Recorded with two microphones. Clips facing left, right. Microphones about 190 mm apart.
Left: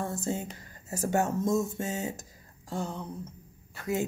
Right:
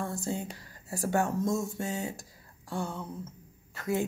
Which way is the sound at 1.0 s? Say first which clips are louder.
Left 1 dB; 20° left (ahead or behind).